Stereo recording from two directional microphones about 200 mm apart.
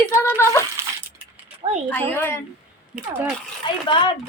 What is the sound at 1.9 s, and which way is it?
Speech, 10° left (ahead or behind).